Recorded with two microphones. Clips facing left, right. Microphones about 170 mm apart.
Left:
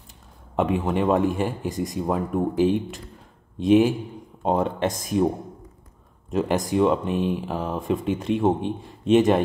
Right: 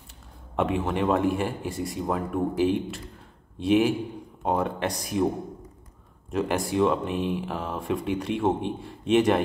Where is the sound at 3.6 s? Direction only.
20° left (ahead or behind).